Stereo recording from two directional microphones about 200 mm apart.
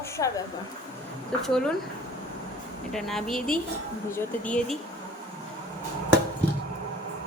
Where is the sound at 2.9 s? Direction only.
Centre (ahead or behind).